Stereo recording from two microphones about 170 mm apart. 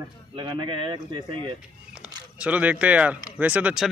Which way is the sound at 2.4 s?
10° right (ahead or behind).